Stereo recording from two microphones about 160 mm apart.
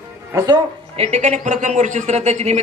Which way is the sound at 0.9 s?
40° right (ahead or behind).